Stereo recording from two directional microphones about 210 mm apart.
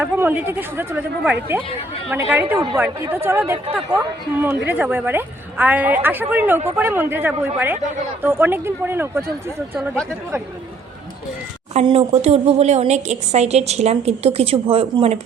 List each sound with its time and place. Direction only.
0.0 s a woman's voice: 10° right (ahead or behind)
9.7 s speech: centre (ahead or behind)
11.7 s speech: 30° right (ahead or behind)